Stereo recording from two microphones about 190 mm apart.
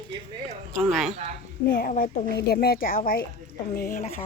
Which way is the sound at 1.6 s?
50° left (ahead or behind).